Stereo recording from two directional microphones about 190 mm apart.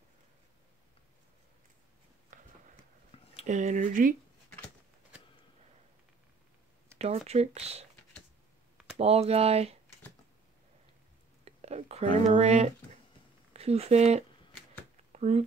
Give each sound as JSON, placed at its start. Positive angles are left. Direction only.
{"t": 3.1, "sound": "a sound", "side_deg": 30}
{"t": 3.4, "sound": "speech", "side_deg": -40}
{"t": 7.0, "sound": "speech", "side_deg": -35}
{"t": 8.9, "sound": "speech", "side_deg": -30}
{"t": 11.4, "sound": "speech", "side_deg": -35}